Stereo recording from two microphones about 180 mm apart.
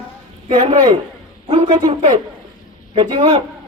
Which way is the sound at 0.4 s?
30° right (ahead or behind).